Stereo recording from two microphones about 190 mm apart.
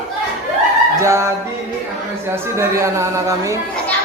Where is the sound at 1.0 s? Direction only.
15° right (ahead or behind).